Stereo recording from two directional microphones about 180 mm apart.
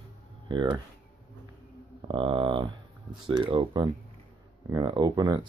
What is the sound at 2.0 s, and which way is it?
Speech, 25° right (ahead or behind).